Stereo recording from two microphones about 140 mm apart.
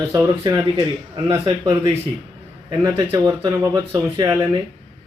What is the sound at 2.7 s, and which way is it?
A man's voice, 25° right (ahead or behind).